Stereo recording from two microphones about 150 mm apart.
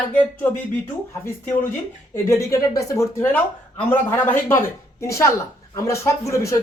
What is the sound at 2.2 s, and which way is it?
Speech, 20° left (ahead or behind).